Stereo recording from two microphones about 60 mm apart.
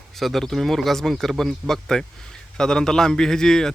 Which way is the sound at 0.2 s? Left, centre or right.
Centre.